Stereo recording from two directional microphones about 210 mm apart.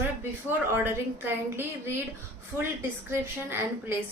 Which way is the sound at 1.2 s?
10° right (ahead or behind).